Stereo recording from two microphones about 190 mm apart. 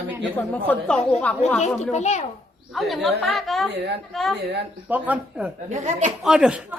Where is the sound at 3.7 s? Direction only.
65° right (ahead or behind).